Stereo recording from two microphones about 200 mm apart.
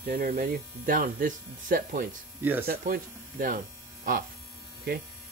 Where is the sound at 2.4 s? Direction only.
10° right (ahead or behind).